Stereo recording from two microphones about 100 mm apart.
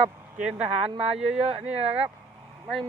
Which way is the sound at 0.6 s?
80° right.